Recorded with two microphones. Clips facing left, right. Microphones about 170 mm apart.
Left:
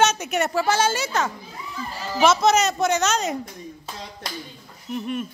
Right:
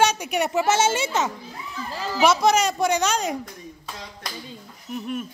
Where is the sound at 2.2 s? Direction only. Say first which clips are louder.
Left 1 dB; 10° right (ahead or behind).